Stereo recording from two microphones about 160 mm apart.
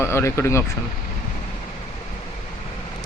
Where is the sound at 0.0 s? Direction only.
15° left (ahead or behind).